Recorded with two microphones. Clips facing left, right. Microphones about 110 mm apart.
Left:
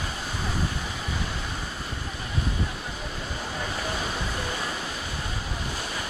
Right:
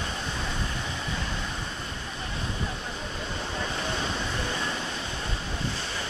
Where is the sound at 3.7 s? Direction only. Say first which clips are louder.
Left 1 dB; 25° right (ahead or behind).